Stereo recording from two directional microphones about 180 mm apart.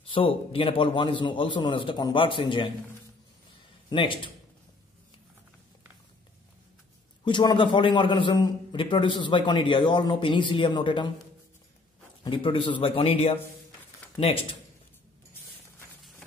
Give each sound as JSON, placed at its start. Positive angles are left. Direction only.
{"t": 0.1, "sound": "a man's voice", "side_deg": 30}
{"t": 3.9, "sound": "a man's voice", "side_deg": 30}
{"t": 7.2, "sound": "a man's voice", "side_deg": 25}
{"t": 12.2, "sound": "a man's voice", "side_deg": 30}